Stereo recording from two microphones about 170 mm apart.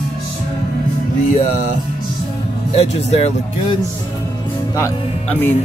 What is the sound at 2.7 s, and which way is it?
Speech, 40° left (ahead or behind).